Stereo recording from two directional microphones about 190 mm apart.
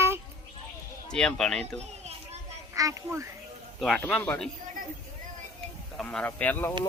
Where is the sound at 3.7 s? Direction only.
Centre (ahead or behind).